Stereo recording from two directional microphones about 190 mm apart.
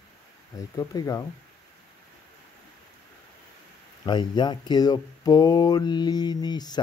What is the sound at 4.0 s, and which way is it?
Speech, 25° left (ahead or behind).